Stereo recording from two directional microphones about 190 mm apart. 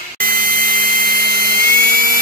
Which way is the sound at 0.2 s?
50° right (ahead or behind).